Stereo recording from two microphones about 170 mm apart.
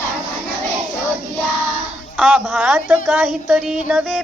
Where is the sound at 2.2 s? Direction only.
Centre (ahead or behind).